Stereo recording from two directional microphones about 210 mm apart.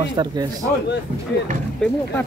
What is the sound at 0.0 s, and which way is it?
Speech, 20° right (ahead or behind).